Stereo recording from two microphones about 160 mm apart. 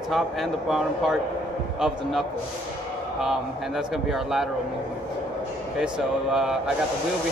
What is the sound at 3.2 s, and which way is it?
Speech, centre (ahead or behind).